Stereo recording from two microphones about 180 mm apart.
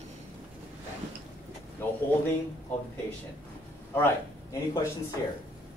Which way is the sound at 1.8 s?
10° left (ahead or behind).